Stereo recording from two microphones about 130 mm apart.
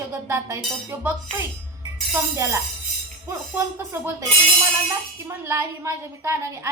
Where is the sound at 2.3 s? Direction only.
20° right (ahead or behind).